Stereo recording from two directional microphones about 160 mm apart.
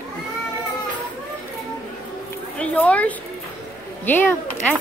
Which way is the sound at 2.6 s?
10° left (ahead or behind).